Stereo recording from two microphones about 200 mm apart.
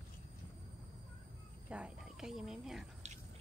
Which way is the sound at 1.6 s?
5° right (ahead or behind).